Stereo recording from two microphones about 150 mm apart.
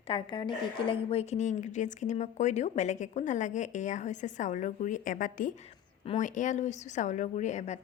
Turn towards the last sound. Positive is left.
turn(degrees=50)  # may be behind; listen again after turning